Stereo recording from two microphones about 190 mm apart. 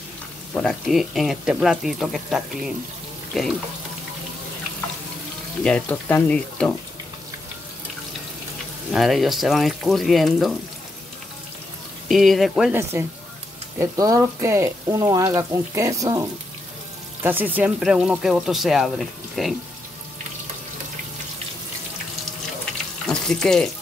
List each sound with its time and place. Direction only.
0.6 s speech: centre (ahead or behind)
5.6 s speech: 5° left (ahead or behind)
8.9 s speech: centre (ahead or behind)
12.1 s speech: centre (ahead or behind)
13.7 s speech: 20° right (ahead or behind); by 19.5 s centre (ahead or behind)
23.0 s frying: 5° left (ahead or behind)